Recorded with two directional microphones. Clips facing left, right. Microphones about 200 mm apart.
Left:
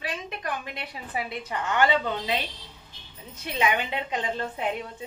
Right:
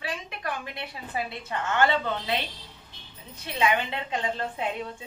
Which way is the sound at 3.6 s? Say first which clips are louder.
Right 1 dB; 15° left (ahead or behind).